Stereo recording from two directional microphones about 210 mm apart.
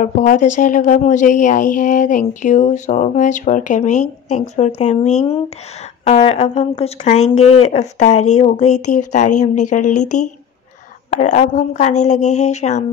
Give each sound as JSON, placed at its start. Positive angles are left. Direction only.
{"t": 0.0, "sound": "speech", "side_deg": 35}
{"t": 11.1, "sound": "speech", "side_deg": 35}